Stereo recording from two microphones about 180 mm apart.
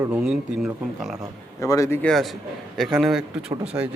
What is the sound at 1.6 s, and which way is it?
Speech, 15° left (ahead or behind).